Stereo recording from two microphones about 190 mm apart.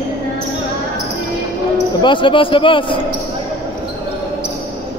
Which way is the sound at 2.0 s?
25° left (ahead or behind).